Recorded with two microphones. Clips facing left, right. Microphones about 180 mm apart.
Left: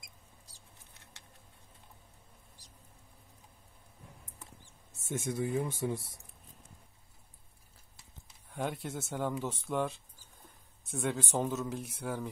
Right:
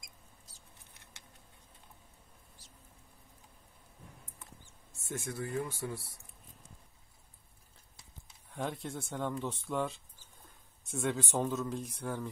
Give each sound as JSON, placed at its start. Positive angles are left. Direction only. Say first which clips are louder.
{"t": 5.0, "sound": "speech", "louder": "left 5 dB", "side_deg": 20}
{"t": 8.5, "sound": "a sound", "louder": "left 2 dB", "side_deg": 0}
{"t": 8.8, "sound": "speech", "louder": "left 2 dB", "side_deg": 5}